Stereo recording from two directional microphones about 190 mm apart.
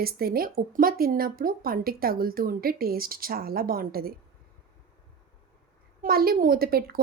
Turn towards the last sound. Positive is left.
turn(degrees=-55)  # may be behind; listen again after turning